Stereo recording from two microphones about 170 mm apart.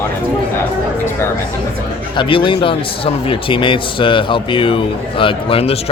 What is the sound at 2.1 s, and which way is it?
A man's voice, 30° left (ahead or behind).